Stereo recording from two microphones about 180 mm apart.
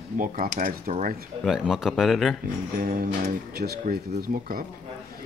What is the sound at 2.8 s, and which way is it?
Speech, 50° right (ahead or behind).